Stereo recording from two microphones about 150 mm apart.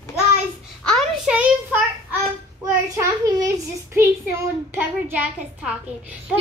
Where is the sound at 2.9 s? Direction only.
20° right (ahead or behind).